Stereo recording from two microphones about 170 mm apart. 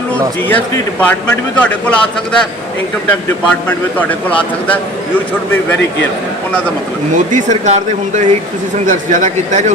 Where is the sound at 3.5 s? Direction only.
10° left (ahead or behind).